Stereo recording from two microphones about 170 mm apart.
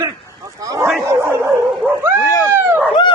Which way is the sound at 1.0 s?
15° right (ahead or behind).